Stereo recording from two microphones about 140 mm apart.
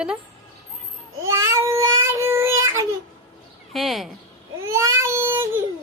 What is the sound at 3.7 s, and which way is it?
Speech, centre (ahead or behind).